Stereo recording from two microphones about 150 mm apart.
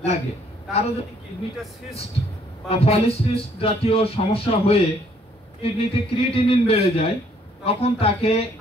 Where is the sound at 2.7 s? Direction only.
40° left (ahead or behind).